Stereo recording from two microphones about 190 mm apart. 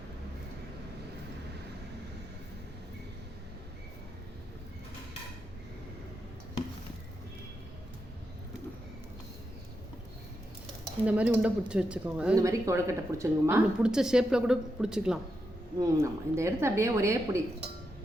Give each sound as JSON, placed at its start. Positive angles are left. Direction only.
{"t": 11.0, "sound": "a woman's voice", "side_deg": -10}
{"t": 13.7, "sound": "a woman's voice", "side_deg": -5}
{"t": 15.8, "sound": "a woman's voice", "side_deg": -15}